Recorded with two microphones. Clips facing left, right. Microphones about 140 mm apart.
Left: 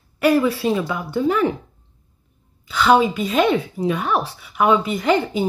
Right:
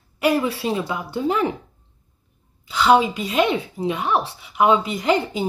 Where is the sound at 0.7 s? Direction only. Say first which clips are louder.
Left 3 dB; 25° right (ahead or behind).